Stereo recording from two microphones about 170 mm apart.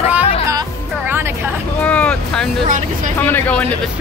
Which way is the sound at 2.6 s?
50° right (ahead or behind).